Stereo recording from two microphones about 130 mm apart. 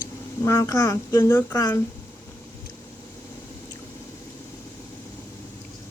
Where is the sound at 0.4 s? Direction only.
25° left (ahead or behind).